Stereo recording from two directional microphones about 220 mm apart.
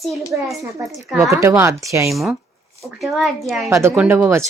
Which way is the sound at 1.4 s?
10° right (ahead or behind).